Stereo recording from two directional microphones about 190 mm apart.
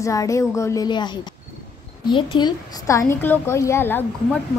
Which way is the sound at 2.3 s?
20° left (ahead or behind).